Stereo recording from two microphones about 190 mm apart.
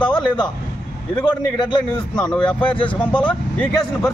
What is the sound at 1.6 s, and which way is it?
A man's voice, 25° left (ahead or behind).